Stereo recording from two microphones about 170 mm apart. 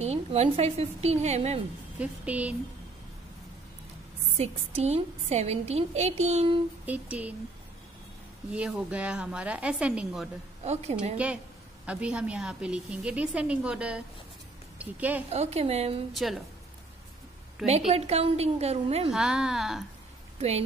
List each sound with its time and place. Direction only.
0.0 s a woman's voice: 40° right (ahead or behind)
2.0 s a woman's voice: 10° right (ahead or behind)
4.4 s a woman's voice: 40° right (ahead or behind)
6.9 s a woman's voice: 10° right (ahead or behind)
8.5 s a woman's voice: 5° right (ahead or behind)
10.6 s a woman's voice: 40° right (ahead or behind)
11.8 s a woman's voice: 5° right (ahead or behind)
15.2 s a woman's voice: 40° right (ahead or behind)
16.1 s a woman's voice: centre (ahead or behind)
17.6 s a woman's voice: 40° right (ahead or behind)
19.0 s a woman's voice: 5° right (ahead or behind)
20.3 s speech: 40° right (ahead or behind)